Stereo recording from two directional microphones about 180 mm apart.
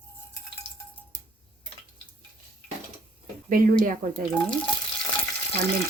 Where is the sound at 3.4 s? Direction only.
50° right (ahead or behind).